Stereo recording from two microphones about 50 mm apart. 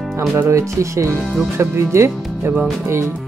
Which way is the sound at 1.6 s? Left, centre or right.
Right.